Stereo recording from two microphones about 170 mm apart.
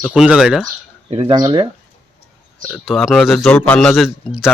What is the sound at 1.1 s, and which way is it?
Speech, 25° right (ahead or behind).